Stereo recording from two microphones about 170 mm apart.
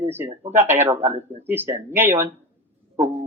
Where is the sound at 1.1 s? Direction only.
40° right (ahead or behind).